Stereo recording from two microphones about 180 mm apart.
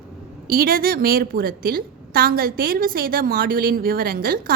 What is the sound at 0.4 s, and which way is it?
A woman's voice, 55° right (ahead or behind).